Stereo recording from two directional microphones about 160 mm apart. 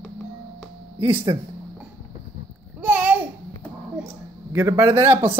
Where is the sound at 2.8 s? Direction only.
10° right (ahead or behind).